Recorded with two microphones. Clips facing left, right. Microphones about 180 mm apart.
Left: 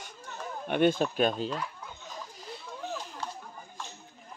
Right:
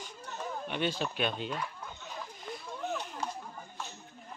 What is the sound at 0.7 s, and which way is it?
Speech, 50° left (ahead or behind).